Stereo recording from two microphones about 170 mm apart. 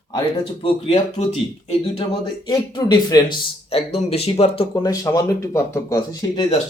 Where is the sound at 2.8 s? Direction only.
25° left (ahead or behind).